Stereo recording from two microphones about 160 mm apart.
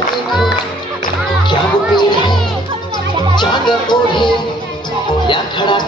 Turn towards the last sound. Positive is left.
turn(degrees=30)  # may be behind; listen again after turning